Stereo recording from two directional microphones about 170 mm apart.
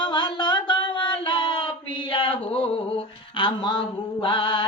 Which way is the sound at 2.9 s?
30° left (ahead or behind).